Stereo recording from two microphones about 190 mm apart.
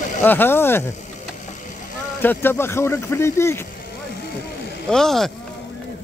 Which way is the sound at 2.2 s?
10° left (ahead or behind).